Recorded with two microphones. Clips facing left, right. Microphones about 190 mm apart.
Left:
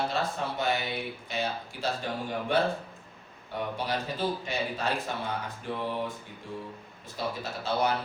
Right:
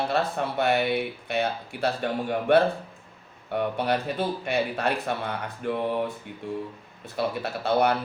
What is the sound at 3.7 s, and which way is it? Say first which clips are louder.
Speech: right 6 dB; 60° right (ahead or behind).